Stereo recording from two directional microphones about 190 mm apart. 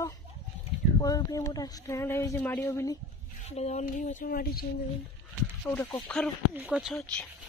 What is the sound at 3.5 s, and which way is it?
Speech, 35° left (ahead or behind).